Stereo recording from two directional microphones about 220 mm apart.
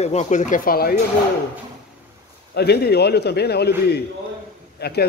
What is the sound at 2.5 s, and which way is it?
A man's voice, 45° left (ahead or behind).